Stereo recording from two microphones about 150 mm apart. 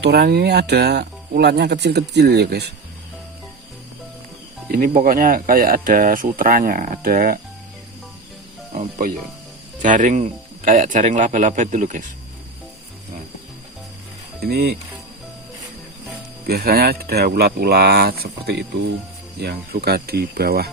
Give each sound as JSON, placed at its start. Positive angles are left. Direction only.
{"t": 0.0, "sound": "speech", "side_deg": -90}
{"t": 4.7, "sound": "speech", "side_deg": -70}
{"t": 8.7, "sound": "speech", "side_deg": -60}
{"t": 14.4, "sound": "speech", "side_deg": -90}
{"t": 16.5, "sound": "speech", "side_deg": -90}